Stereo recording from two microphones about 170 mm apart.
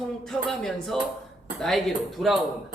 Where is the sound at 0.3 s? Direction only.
Centre (ahead or behind).